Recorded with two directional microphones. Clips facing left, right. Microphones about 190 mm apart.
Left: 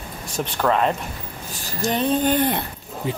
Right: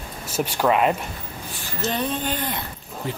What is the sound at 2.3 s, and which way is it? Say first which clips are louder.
Speech: left 8 dB; 55° left (ahead or behind).